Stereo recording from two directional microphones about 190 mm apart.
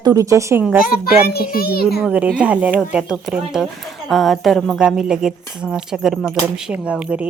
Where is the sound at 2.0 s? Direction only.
5° right (ahead or behind).